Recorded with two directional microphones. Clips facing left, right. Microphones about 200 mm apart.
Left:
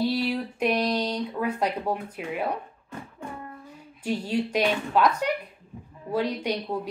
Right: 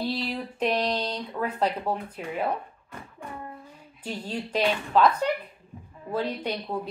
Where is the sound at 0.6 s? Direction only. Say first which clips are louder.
Left 1 dB; 10° left (ahead or behind).